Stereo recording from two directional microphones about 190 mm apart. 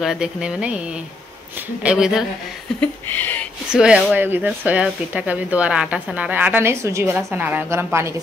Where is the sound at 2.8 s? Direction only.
10° left (ahead or behind).